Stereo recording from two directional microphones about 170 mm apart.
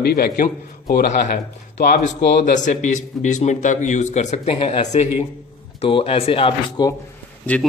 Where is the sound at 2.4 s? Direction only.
45° left (ahead or behind); by 6.9 s 30° left (ahead or behind).